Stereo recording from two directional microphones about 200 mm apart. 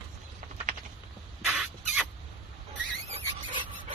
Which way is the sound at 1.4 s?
5° right (ahead or behind).